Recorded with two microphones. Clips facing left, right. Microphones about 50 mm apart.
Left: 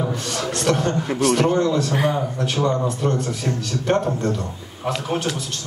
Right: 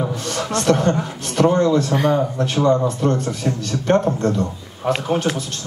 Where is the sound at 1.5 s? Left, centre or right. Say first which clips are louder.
Right 3 dB; centre.